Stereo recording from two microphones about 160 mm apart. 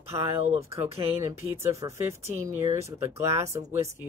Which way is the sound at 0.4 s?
40° right (ahead or behind).